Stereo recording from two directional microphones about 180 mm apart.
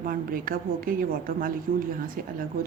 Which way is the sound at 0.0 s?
50° right (ahead or behind).